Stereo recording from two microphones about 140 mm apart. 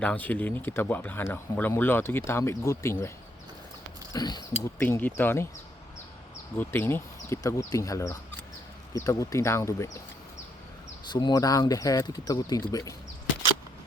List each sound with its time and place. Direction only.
0.0 s speech: 10° left (ahead or behind)
4.1 s speech: 30° left (ahead or behind)
4.6 s speech: 15° left (ahead or behind)
6.6 s speech: 15° left (ahead or behind)
11.1 s speech: 30° left (ahead or behind)